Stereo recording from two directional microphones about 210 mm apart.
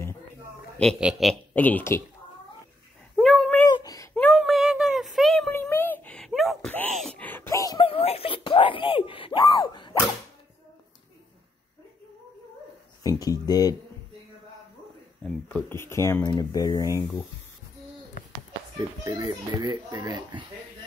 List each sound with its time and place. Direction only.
0.7 s speech: centre (ahead or behind)
3.2 s cat: centre (ahead or behind)
3.7 s a sound: 15° left (ahead or behind)
4.1 s child singing: 5° left (ahead or behind)
5.5 s a sound: 10° left (ahead or behind)
13.0 s speech: 15° left (ahead or behind)
15.2 s speech: 10° left (ahead or behind)
18.8 s speech: 15° right (ahead or behind)